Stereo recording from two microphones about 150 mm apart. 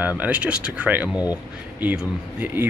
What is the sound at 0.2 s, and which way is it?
Speech, 10° right (ahead or behind).